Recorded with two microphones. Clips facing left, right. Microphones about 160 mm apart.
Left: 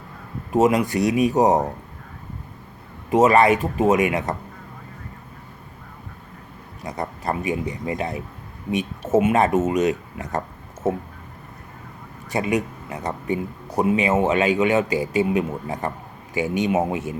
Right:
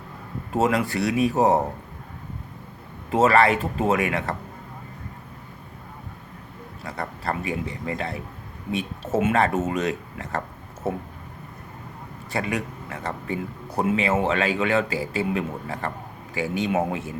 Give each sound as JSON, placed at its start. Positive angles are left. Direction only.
{"t": 0.5, "sound": "a man's voice", "side_deg": 20}
{"t": 3.1, "sound": "a man's voice", "side_deg": 20}
{"t": 6.8, "sound": "a man's voice", "side_deg": 20}
{"t": 9.2, "sound": "speech", "side_deg": 15}
{"t": 12.3, "sound": "a man's voice", "side_deg": 20}